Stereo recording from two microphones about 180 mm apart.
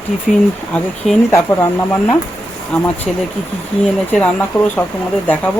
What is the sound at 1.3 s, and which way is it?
Speech, 15° left (ahead or behind).